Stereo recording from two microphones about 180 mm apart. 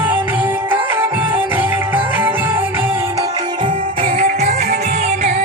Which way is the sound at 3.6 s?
35° right (ahead or behind).